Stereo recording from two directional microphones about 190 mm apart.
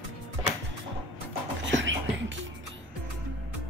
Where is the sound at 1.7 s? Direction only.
75° right (ahead or behind).